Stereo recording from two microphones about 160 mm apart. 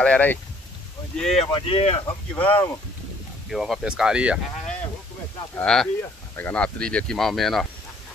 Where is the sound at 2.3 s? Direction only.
10° left (ahead or behind).